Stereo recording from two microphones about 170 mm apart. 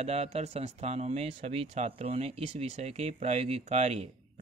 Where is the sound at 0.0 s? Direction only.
40° right (ahead or behind).